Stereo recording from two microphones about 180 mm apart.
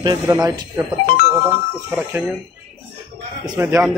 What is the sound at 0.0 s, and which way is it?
Speech, 20° right (ahead or behind).